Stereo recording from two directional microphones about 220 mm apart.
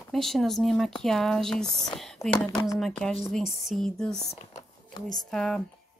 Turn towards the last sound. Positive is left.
turn(degrees=5)  # may be behind; listen again after turning